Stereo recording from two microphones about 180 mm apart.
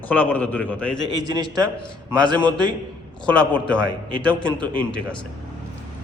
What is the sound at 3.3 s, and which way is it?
A man's voice, 5° left (ahead or behind).